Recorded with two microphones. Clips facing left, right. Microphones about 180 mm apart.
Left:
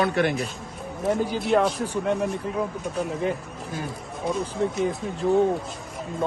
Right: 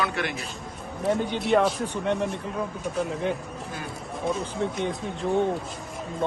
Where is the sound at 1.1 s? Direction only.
Centre (ahead or behind).